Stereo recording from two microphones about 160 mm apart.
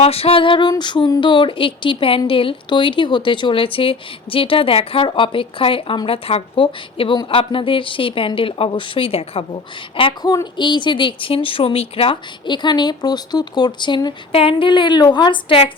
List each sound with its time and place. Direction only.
0.0 s music: 40° left (ahead or behind)
10.3 s speech: 30° left (ahead or behind)